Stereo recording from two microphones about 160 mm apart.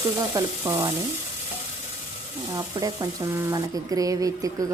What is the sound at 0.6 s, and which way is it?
Frying, 15° right (ahead or behind).